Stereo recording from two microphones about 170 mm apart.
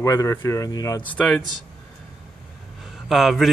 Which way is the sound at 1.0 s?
5° left (ahead or behind).